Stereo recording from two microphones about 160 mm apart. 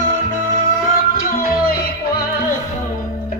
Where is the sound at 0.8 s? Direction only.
60° left (ahead or behind).